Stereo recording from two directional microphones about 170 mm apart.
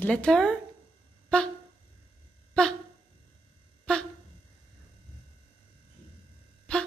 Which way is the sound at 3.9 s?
5° left (ahead or behind).